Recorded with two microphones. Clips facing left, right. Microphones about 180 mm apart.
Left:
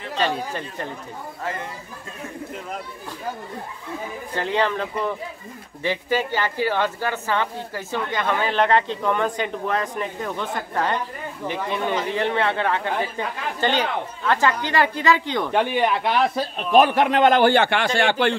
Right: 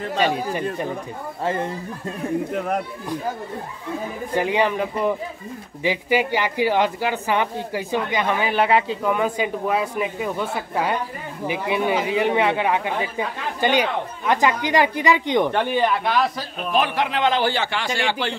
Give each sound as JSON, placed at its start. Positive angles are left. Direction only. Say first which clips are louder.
{"t": 0.2, "sound": "speech", "louder": "right 2 dB", "side_deg": -15}
{"t": 1.4, "sound": "speech", "louder": "right 7 dB", "side_deg": -30}
{"t": 2.5, "sound": "speech", "louder": "right 9 dB", "side_deg": -65}
{"t": 4.4, "sound": "speech", "louder": "right 2 dB", "side_deg": -15}
{"t": 15.5, "sound": "speech", "louder": "even", "side_deg": 15}
{"t": 16.7, "sound": "a man's voice", "louder": "left 6 dB", "side_deg": 45}